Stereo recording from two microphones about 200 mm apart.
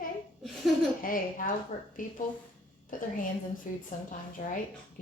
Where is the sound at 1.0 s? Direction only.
45° left (ahead or behind).